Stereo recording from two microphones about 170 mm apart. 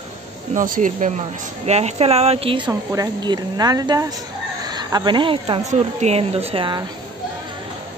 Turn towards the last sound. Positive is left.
turn(degrees=-30)  # may be behind; listen again after turning